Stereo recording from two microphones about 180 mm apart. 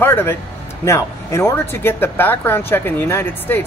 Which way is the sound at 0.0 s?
10° left (ahead or behind).